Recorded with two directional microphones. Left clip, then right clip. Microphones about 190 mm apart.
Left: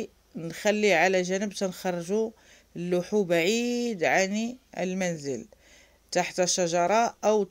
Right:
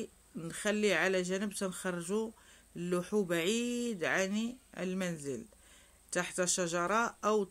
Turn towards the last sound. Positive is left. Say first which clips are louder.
# left 8 dB
turn(degrees=20)  # may be behind; listen again after turning